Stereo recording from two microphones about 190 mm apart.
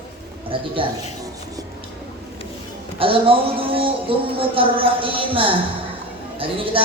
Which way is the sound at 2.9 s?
30° right (ahead or behind).